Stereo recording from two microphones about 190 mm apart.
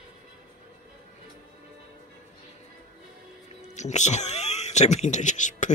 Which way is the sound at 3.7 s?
40° left (ahead or behind).